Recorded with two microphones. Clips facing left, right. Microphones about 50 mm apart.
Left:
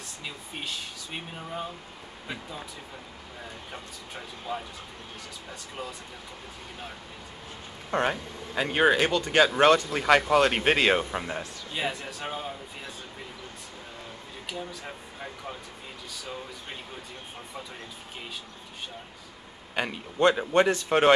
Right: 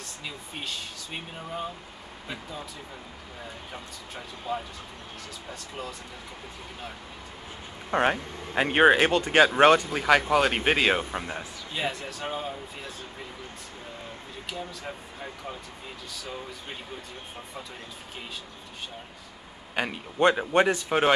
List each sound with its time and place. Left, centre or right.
0.2 s speech: centre
3.7 s speech: centre
7.9 s speech: right
9.2 s speech: centre
9.9 s speech: centre
14.5 s speech: centre
19.7 s a man's voice: centre